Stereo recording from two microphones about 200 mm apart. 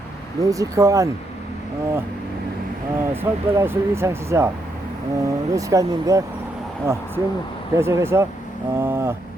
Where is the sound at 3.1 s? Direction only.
10° right (ahead or behind).